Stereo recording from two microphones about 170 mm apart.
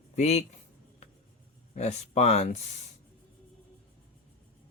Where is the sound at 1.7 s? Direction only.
40° left (ahead or behind).